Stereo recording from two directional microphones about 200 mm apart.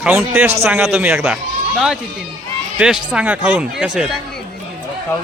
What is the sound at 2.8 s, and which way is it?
Speech, 5° right (ahead or behind).